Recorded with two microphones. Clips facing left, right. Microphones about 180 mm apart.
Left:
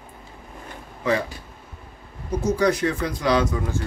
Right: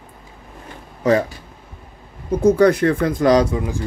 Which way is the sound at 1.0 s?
40° right (ahead or behind).